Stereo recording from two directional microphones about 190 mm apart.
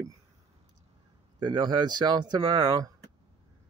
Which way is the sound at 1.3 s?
20° right (ahead or behind).